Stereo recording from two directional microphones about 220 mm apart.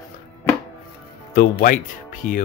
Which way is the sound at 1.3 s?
40° left (ahead or behind).